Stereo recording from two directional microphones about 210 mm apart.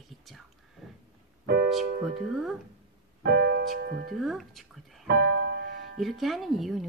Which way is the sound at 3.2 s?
50° right (ahead or behind).